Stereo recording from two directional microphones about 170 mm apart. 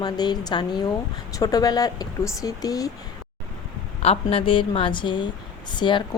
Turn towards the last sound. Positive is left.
turn(degrees=25)  # may be behind; listen again after turning